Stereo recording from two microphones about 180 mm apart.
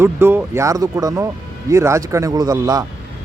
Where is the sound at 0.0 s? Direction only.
15° right (ahead or behind).